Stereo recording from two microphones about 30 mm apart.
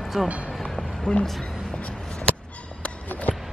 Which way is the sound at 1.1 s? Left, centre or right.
Left.